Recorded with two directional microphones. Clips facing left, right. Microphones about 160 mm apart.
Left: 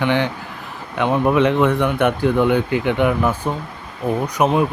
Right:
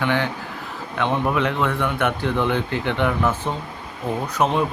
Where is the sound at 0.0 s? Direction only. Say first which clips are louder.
Left 3 dB; 20° left (ahead or behind).